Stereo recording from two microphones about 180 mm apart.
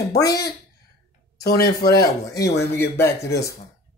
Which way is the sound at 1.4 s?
60° left (ahead or behind).